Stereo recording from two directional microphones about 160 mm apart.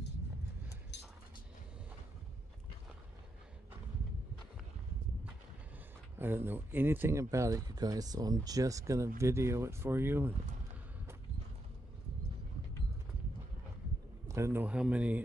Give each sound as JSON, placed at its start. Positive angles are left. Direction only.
{"t": 0.9, "sound": "a sound", "side_deg": 90}
{"t": 6.1, "sound": "speech", "side_deg": -15}
{"t": 14.2, "sound": "speech", "side_deg": -20}